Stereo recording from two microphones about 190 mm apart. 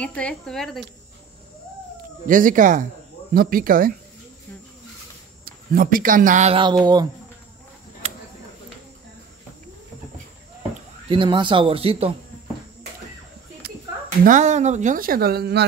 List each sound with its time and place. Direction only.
0.0 s speech: 5° left (ahead or behind)
2.2 s speech: 45° right (ahead or behind)
5.4 s speech: 50° right (ahead or behind); by 7.1 s 20° right (ahead or behind)
11.1 s speech: 25° right (ahead or behind)
13.6 s a sound: 55° right (ahead or behind)
14.2 s speech: 40° right (ahead or behind); by 15.6 s 55° right (ahead or behind)